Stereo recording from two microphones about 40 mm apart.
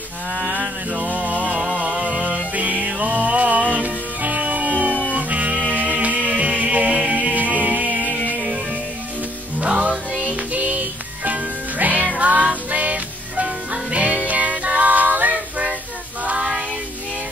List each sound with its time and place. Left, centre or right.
0.9 s music: right
9.6 s music: right